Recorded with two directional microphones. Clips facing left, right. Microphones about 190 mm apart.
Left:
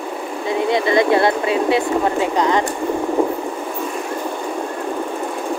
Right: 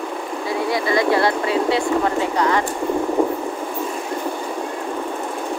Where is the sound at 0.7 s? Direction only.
20° left (ahead or behind).